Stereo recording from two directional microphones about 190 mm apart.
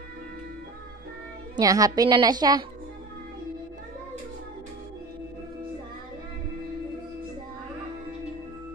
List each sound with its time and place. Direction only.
1.6 s a woman's voice: 20° right (ahead or behind)